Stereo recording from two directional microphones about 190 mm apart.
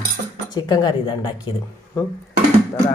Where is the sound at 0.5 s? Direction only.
20° left (ahead or behind).